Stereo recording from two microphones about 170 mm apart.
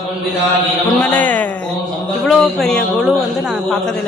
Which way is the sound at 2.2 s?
5° left (ahead or behind).